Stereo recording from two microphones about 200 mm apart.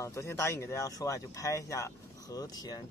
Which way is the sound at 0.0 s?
15° left (ahead or behind).